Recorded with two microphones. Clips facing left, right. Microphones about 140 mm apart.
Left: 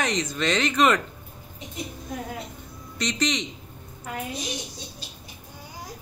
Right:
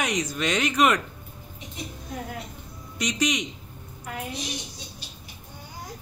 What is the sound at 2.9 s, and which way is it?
Speech, 10° right (ahead or behind).